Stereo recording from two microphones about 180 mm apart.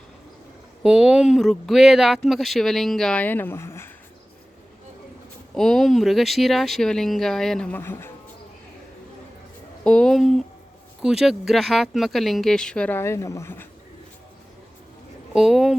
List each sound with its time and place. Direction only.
0.8 s speech: 5° right (ahead or behind); by 3.8 s 15° left (ahead or behind)
5.5 s speech: centre (ahead or behind)
9.8 s speech: 5° left (ahead or behind)
15.3 s speech: 5° right (ahead or behind)